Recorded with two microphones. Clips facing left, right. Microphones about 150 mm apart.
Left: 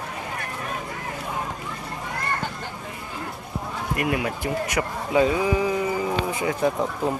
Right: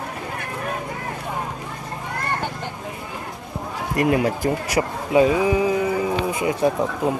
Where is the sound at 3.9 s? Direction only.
30° right (ahead or behind).